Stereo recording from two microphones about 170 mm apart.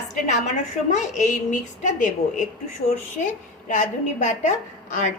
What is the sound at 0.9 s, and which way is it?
A woman's voice, 45° left (ahead or behind).